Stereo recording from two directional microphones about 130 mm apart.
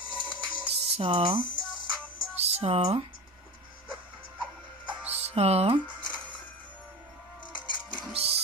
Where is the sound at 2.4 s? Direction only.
55° right (ahead or behind).